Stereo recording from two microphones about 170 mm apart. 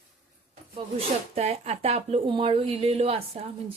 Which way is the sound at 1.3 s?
40° right (ahead or behind).